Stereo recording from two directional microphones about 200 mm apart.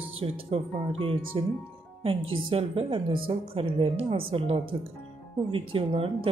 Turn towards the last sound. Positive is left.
turn(degrees=-30)  # may be behind; listen again after turning